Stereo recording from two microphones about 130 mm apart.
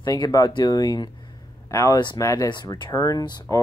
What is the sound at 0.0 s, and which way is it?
Speech, 30° left (ahead or behind).